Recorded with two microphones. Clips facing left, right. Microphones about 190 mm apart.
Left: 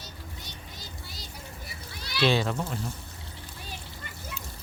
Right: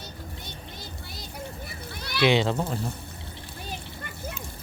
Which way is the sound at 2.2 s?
20° right (ahead or behind).